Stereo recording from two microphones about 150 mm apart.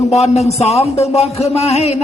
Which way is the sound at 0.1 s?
45° left (ahead or behind).